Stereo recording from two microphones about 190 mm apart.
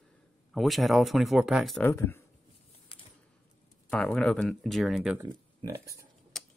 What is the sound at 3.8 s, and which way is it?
Speech, 5° left (ahead or behind).